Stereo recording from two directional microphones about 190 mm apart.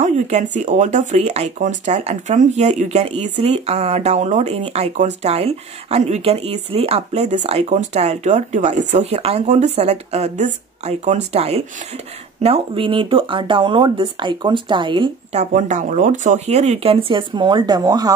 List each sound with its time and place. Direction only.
0.0 s a sound: 40° right (ahead or behind)
0.6 s speech: 40° right (ahead or behind)
15.5 s speech: 40° right (ahead or behind); by 18.1 s 20° right (ahead or behind)